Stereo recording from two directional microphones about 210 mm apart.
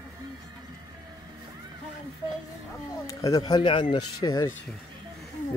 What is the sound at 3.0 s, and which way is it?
Speech, 15° left (ahead or behind).